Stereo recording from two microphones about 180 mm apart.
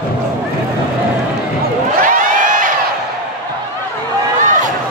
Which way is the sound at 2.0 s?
45° right (ahead or behind).